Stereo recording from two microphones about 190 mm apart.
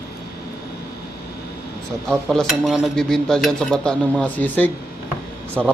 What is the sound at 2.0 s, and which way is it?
A man's voice, centre (ahead or behind).